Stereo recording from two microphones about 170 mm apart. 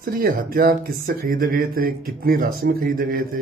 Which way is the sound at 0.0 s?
55° right (ahead or behind).